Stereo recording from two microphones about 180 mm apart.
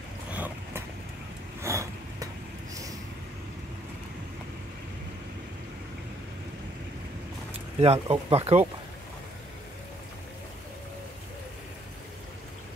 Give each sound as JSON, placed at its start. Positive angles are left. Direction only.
{"t": 0.3, "sound": "boat", "side_deg": -10}
{"t": 1.6, "sound": "a sound", "side_deg": -15}
{"t": 2.7, "sound": "vehicle", "side_deg": -20}
{"t": 7.8, "sound": "speech", "side_deg": -35}